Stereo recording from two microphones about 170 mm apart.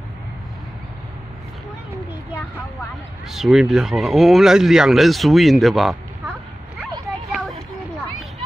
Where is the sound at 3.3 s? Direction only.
Centre (ahead or behind).